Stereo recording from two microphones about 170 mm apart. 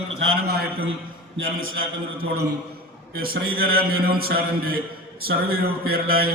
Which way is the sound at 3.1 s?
60° right (ahead or behind).